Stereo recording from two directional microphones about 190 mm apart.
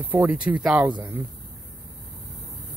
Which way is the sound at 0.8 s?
20° right (ahead or behind).